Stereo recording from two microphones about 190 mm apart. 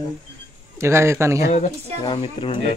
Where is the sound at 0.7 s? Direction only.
15° right (ahead or behind).